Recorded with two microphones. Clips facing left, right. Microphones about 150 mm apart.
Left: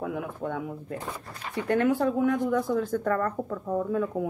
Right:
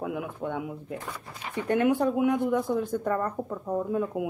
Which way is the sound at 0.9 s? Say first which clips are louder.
Left 2 dB; 20° left (ahead or behind).